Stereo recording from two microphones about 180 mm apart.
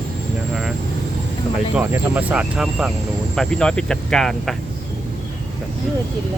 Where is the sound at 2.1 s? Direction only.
5° right (ahead or behind).